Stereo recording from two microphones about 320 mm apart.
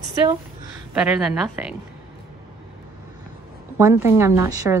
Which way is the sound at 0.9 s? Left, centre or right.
Centre.